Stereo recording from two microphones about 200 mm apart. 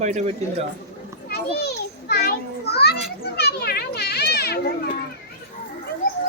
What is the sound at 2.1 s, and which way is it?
Children playing, 55° left (ahead or behind).